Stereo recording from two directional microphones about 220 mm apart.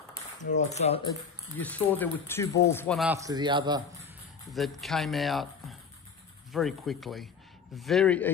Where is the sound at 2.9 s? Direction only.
10° right (ahead or behind).